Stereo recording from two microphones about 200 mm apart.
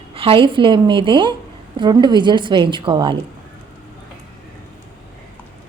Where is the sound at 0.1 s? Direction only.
25° right (ahead or behind).